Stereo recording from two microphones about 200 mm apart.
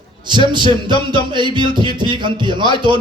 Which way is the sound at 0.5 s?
25° right (ahead or behind).